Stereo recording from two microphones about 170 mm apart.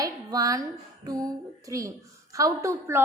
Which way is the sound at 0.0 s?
20° right (ahead or behind).